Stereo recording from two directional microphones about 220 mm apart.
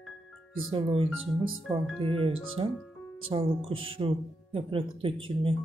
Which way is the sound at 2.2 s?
25° right (ahead or behind).